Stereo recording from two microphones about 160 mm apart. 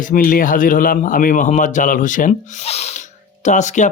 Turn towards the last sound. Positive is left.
turn(degrees=50)  # may be behind; listen again after turning